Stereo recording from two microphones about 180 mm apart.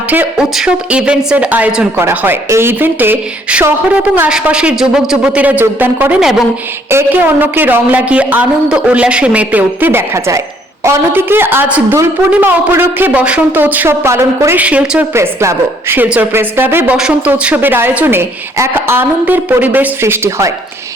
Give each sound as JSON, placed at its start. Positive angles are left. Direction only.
{"t": 0.1, "sound": "a woman's voice", "side_deg": -5}